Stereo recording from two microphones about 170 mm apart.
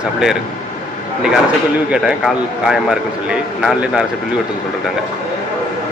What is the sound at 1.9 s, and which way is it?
Speech, 5° right (ahead or behind).